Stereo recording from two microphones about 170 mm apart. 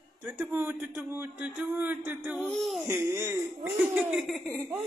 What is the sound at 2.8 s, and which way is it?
Speech, 15° right (ahead or behind).